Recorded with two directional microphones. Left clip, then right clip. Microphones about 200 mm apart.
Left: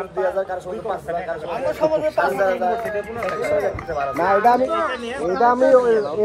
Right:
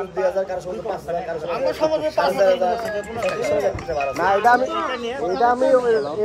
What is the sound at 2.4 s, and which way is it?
Speech, 60° right (ahead or behind).